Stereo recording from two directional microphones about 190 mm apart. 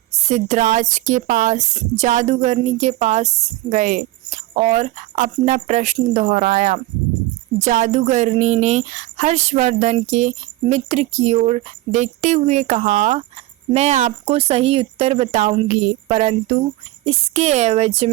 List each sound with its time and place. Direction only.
0.1 s speech: 35° right (ahead or behind)